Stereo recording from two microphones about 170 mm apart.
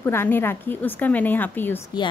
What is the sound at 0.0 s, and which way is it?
A woman's voice, 15° left (ahead or behind).